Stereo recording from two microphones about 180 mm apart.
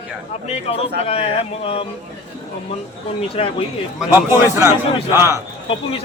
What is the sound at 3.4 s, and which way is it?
Speech, 35° left (ahead or behind).